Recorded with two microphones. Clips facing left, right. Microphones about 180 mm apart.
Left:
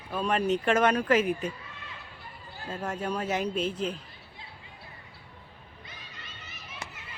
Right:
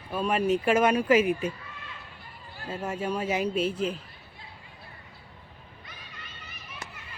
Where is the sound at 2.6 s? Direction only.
10° right (ahead or behind).